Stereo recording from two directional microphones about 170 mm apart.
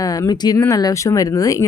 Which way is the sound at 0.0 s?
20° left (ahead or behind).